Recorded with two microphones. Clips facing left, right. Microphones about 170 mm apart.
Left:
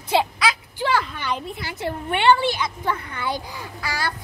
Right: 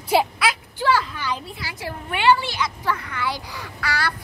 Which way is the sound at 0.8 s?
20° left (ahead or behind).